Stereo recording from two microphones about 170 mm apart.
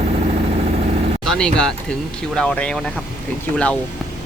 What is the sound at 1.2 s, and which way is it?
Speech, 5° left (ahead or behind).